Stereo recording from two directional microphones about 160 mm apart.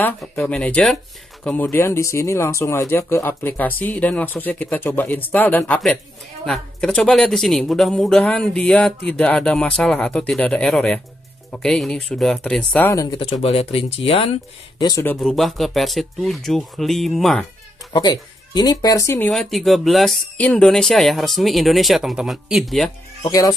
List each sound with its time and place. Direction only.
0.2 s speech: 5° left (ahead or behind)
12.9 s speech: 20° left (ahead or behind)
13.2 s speech: 35° left (ahead or behind)
14.8 s speech: 20° left (ahead or behind)
15.1 s speech: centre (ahead or behind)
17.9 s speech: 25° left (ahead or behind)
19.3 s speech: centre (ahead or behind)
23.2 s speech: 20° left (ahead or behind)